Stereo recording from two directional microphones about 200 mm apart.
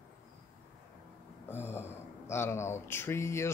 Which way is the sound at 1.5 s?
10° left (ahead or behind).